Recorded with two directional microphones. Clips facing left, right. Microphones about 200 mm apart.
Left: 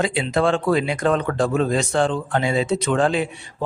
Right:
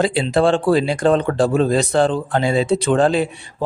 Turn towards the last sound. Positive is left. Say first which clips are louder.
# right 4 dB
turn(degrees=-35)  # may be behind; listen again after turning